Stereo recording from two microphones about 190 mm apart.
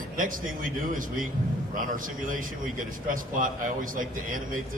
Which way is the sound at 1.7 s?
45° right (ahead or behind).